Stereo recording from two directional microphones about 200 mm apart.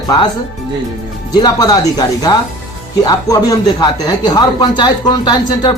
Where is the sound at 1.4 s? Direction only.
20° left (ahead or behind).